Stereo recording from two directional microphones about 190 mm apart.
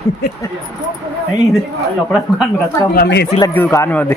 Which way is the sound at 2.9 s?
60° left (ahead or behind).